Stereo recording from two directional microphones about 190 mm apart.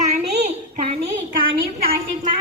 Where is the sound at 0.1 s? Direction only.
35° right (ahead or behind).